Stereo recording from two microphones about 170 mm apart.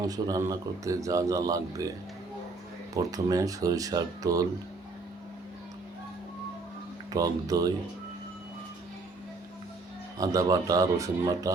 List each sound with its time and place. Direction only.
0.0 s a man's voice: 20° right (ahead or behind)
2.9 s a man's voice: 20° right (ahead or behind)
7.1 s a man's voice: 20° right (ahead or behind)
10.2 s a man's voice: 20° right (ahead or behind)